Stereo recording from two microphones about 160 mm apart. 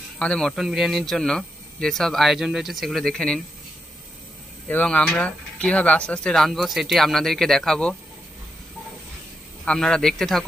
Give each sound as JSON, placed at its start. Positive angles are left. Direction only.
{"t": 0.2, "sound": "speech", "side_deg": 5}
{"t": 4.6, "sound": "speech", "side_deg": 10}
{"t": 9.7, "sound": "speech", "side_deg": 5}